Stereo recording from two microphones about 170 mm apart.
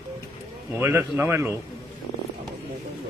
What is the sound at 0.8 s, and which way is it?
Speech, 10° right (ahead or behind).